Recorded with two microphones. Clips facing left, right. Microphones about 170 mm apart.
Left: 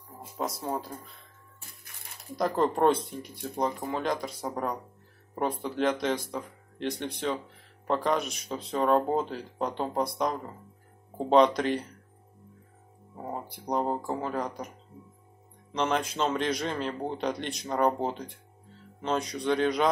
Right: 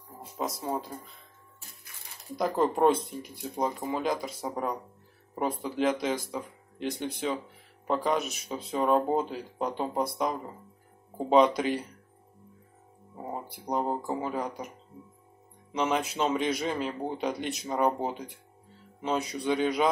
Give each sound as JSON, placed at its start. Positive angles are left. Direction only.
{"t": 0.4, "sound": "a man's voice", "side_deg": 0}
{"t": 2.3, "sound": "a man's voice", "side_deg": -5}
{"t": 13.2, "sound": "a man's voice", "side_deg": -5}
{"t": 15.7, "sound": "a man's voice", "side_deg": -5}